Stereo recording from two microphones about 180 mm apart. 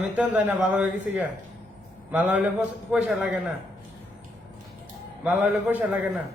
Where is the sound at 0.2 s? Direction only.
10° right (ahead or behind).